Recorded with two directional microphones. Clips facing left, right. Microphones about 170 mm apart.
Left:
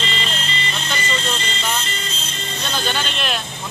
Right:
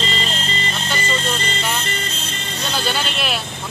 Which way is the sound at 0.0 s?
40° right (ahead or behind).